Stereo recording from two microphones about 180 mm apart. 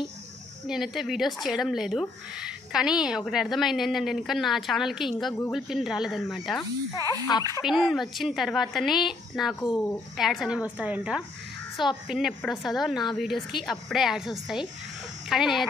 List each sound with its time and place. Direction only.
0.7 s speech: centre (ahead or behind)
7.3 s speech: 25° left (ahead or behind)
7.6 s speech: centre (ahead or behind)
9.6 s speech: 20° left (ahead or behind)
10.1 s speech: centre (ahead or behind)